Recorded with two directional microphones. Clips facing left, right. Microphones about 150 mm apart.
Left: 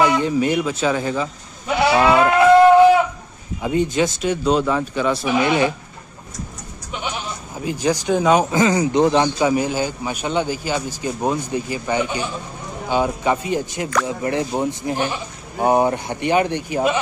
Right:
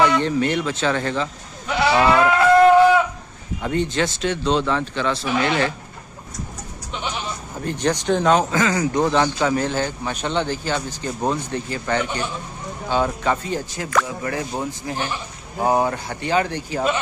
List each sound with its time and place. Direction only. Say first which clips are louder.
0.0 s a man's voice: left 1 dB; 10° left (ahead or behind)
2.0 s sheep: left 1 dB; 15° left (ahead or behind)
3.6 s a man's voice: left 3 dB; 10° left (ahead or behind)
7.6 s a man's voice: left 1 dB; 5° left (ahead or behind)